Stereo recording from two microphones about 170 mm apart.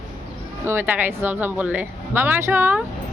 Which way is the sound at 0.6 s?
15° right (ahead or behind).